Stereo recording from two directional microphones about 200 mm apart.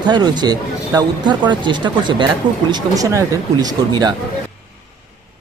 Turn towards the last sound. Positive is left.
turn(degrees=-20)  # may be behind; listen again after turning